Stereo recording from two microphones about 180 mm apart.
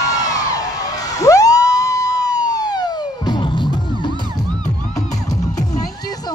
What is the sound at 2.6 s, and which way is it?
Music, 20° left (ahead or behind).